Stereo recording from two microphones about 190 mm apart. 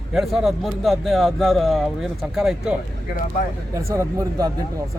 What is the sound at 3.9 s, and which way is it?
Speech, 15° right (ahead or behind).